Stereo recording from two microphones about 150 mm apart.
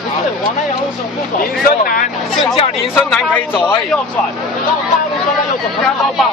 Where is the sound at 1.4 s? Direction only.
70° left (ahead or behind).